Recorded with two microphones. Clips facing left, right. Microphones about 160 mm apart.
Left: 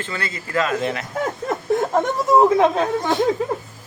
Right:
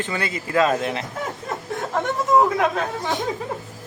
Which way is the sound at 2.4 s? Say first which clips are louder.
Left 5 dB; 25° left (ahead or behind).